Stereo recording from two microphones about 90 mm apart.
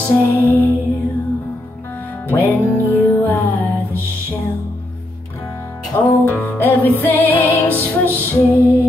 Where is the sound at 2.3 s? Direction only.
20° left (ahead or behind).